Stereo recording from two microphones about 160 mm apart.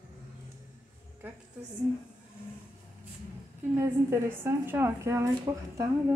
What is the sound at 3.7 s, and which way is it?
A woman's voice, 15° right (ahead or behind).